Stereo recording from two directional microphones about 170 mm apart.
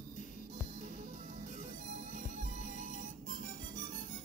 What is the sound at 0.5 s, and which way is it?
Music, 50° right (ahead or behind).